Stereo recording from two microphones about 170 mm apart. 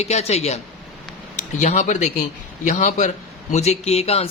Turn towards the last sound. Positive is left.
turn(degrees=35)  # may be behind; listen again after turning